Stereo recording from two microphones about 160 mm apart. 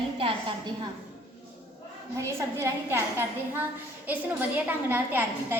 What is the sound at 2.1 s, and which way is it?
A woman's voice, 20° right (ahead or behind).